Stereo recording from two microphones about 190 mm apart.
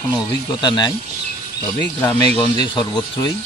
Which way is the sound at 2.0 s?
10° left (ahead or behind).